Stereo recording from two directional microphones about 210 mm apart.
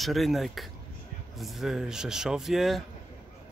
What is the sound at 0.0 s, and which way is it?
Speech, centre (ahead or behind).